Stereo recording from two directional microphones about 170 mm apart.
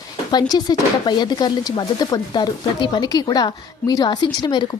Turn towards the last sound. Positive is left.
turn(degrees=25)  # may be behind; listen again after turning